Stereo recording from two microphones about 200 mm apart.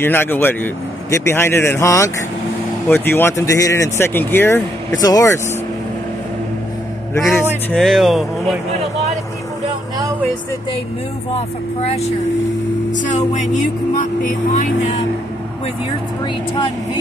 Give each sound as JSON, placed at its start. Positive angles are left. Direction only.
{"t": 0.0, "sound": "speech", "side_deg": 10}
{"t": 7.7, "sound": "speech", "side_deg": 0}
{"t": 11.3, "sound": "speech", "side_deg": 30}